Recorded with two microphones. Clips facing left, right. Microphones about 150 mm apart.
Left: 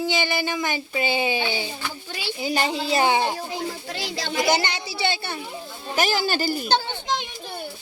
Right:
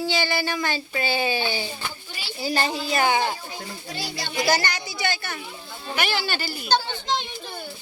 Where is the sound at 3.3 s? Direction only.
80° left.